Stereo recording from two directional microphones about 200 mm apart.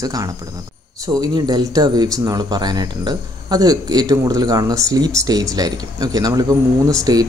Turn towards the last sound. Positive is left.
turn(degrees=-15)  # may be behind; listen again after turning